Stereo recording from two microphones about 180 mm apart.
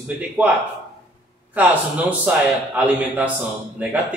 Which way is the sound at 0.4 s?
10° right (ahead or behind).